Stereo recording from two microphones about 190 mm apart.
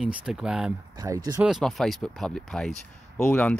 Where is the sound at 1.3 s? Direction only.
Centre (ahead or behind).